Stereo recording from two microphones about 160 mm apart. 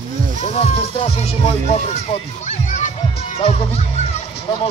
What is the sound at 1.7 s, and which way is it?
A child's voice, 45° left (ahead or behind).